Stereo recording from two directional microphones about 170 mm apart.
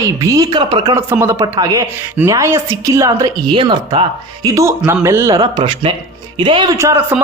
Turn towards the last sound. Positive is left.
turn(degrees=-15)  # may be behind; listen again after turning